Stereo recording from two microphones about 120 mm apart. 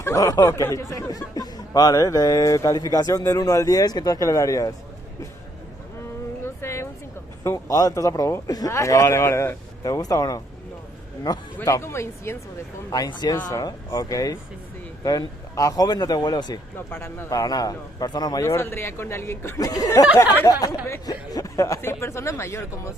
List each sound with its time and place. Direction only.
0.0 s speech: 25° left (ahead or behind)
6.4 s a sound: 20° left (ahead or behind)
7.4 s speech: 30° left (ahead or behind)
11.6 s speech: 25° left (ahead or behind)
12.9 s speech: 35° left (ahead or behind)
16.7 s speech: 20° left (ahead or behind)